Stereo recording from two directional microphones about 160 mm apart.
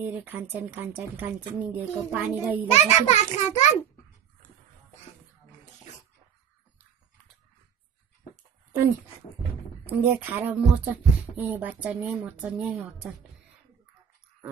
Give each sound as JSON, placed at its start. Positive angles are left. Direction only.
{"t": 0.0, "sound": "speech", "side_deg": -10}
{"t": 2.7, "sound": "a child's voice", "side_deg": 45}
{"t": 9.8, "sound": "speech", "side_deg": -10}